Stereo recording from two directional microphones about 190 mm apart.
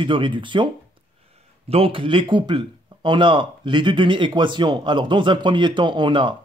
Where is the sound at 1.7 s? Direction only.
30° right (ahead or behind).